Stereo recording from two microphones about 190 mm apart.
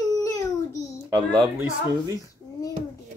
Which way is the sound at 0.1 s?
20° left (ahead or behind).